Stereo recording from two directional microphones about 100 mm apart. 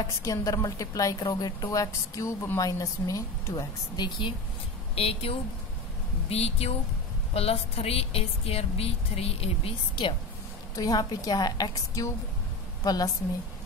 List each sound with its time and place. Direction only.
0.0 s a woman's voice: 35° left (ahead or behind)
4.9 s speech: 85° left
10.8 s a woman's voice: 40° left (ahead or behind)